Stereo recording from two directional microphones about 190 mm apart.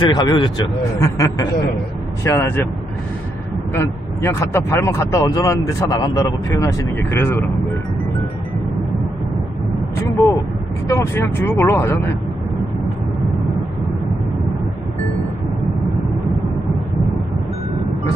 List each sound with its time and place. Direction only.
0.0 s speech: 20° left (ahead or behind)
3.7 s speech: 15° left (ahead or behind)
10.9 s speech: 10° left (ahead or behind)